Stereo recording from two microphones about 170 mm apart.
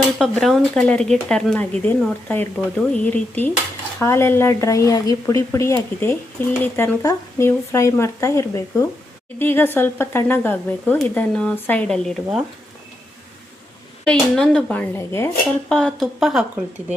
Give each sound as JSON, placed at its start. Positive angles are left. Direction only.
{"t": 0.2, "sound": "speech", "side_deg": 0}
{"t": 14.0, "sound": "speech", "side_deg": 5}
{"t": 15.7, "sound": "speech", "side_deg": 0}